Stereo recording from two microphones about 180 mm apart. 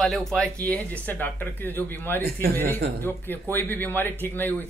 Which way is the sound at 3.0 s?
10° left (ahead or behind).